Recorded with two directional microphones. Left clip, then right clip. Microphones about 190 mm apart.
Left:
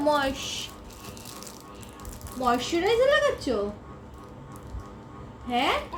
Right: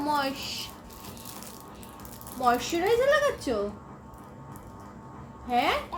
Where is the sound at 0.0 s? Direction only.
20° left (ahead or behind).